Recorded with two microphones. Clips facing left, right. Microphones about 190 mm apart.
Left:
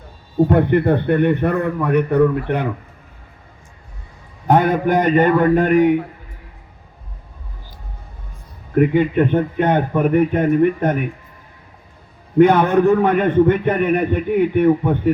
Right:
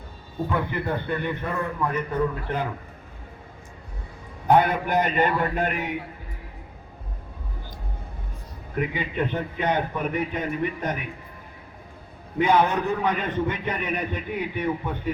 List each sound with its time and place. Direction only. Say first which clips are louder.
0.4 s a man's voice: left 12 dB; 60° left (ahead or behind)
4.4 s a man's voice: left 5 dB; 45° left (ahead or behind)
8.7 s a man's voice: left 13 dB; 55° left (ahead or behind)
12.4 s a man's voice: left 9 dB; 55° left (ahead or behind)